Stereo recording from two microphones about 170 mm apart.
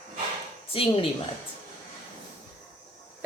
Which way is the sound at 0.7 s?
35° left (ahead or behind).